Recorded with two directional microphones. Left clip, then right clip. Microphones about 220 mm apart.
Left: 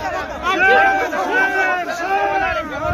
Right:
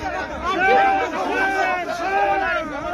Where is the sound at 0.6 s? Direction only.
20° left (ahead or behind).